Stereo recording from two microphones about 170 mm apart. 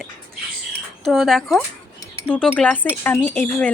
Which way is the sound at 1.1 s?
Centre (ahead or behind).